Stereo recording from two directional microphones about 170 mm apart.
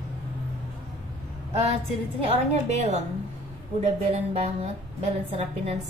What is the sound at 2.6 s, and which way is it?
A woman's voice, 40° right (ahead or behind).